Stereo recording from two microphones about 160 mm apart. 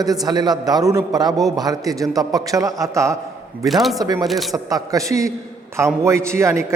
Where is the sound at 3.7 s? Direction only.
Centre (ahead or behind).